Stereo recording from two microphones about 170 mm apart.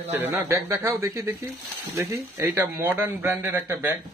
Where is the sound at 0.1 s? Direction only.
15° right (ahead or behind).